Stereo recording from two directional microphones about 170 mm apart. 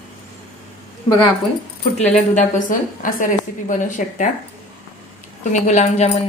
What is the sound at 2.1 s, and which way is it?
A woman's voice, 50° left (ahead or behind).